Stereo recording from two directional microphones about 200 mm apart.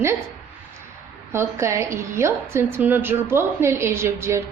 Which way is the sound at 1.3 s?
15° right (ahead or behind).